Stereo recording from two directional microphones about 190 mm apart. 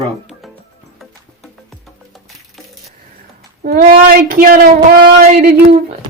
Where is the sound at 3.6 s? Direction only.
50° right (ahead or behind).